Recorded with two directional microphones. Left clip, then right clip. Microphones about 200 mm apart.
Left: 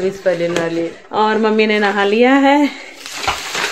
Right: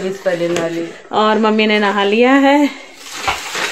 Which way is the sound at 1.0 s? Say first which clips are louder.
Right 2 dB; 20° right (ahead or behind).